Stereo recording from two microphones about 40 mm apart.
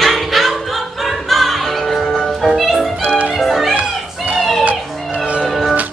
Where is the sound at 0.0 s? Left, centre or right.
Centre.